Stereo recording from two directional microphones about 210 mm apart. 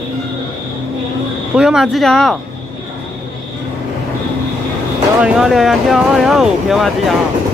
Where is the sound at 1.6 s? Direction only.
5° right (ahead or behind).